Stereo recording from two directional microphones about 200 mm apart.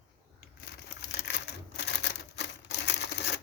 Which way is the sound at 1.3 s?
60° left (ahead or behind).